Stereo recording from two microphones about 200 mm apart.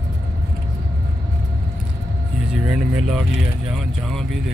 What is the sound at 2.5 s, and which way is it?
Vehicle, 5° right (ahead or behind).